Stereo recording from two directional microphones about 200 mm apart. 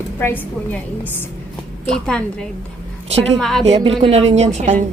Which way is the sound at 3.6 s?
30° right (ahead or behind).